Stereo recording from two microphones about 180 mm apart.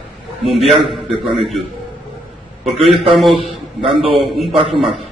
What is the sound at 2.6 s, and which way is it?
Speech, centre (ahead or behind).